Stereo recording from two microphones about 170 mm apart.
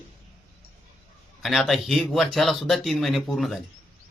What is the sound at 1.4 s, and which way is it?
A man's voice, centre (ahead or behind).